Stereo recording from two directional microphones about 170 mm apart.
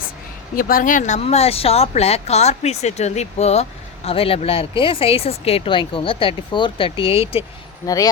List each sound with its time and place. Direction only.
0.5 s speech: 55° left (ahead or behind); by 7.4 s 35° left (ahead or behind)
7.9 s speech: 20° left (ahead or behind)